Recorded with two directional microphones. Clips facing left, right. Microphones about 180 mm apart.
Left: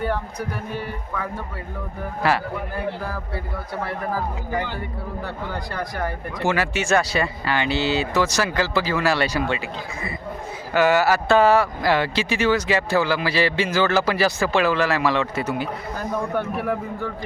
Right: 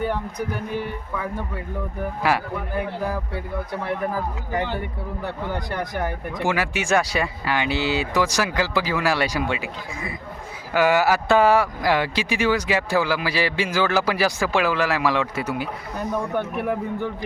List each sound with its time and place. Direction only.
2.2 s speech: 15° right (ahead or behind)
5.2 s a man's voice: 20° right (ahead or behind)